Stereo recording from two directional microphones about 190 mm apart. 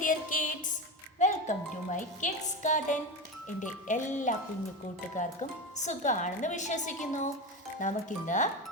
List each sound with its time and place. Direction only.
0.0 s music: 45° left (ahead or behind)
1.2 s a woman's voice: 40° left (ahead or behind)